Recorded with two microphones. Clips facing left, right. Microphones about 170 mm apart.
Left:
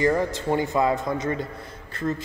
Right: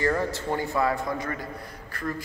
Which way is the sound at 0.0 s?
15° left (ahead or behind).